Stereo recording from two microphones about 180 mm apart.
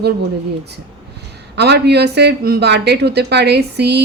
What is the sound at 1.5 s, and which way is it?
Speech, 70° right (ahead or behind).